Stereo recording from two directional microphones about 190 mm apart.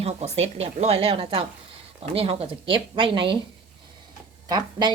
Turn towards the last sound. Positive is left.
turn(degrees=-20)  # may be behind; listen again after turning